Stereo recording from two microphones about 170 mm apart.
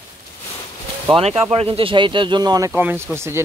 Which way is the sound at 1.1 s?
35° right (ahead or behind).